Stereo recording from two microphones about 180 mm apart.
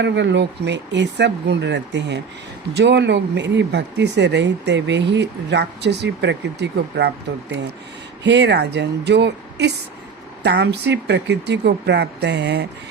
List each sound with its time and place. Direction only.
0.0 s speech: 75° right (ahead or behind)
8.2 s speech: 75° right (ahead or behind)